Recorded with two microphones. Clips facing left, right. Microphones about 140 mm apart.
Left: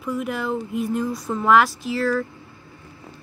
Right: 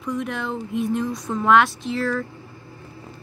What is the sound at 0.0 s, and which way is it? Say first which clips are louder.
Speech: left 1 dB; 5° left (ahead or behind).